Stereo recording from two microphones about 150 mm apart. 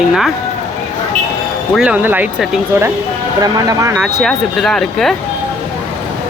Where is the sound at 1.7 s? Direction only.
5° right (ahead or behind).